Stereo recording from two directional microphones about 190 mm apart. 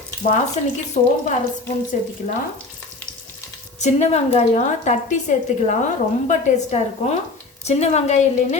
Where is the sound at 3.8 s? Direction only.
35° left (ahead or behind).